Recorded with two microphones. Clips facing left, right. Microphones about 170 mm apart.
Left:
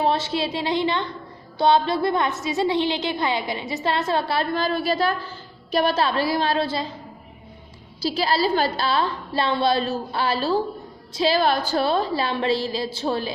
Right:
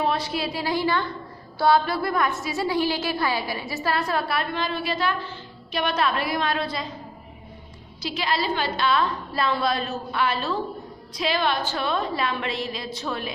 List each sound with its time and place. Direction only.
0.0 s a woman's voice: 25° left (ahead or behind)
8.0 s a woman's voice: 35° left (ahead or behind)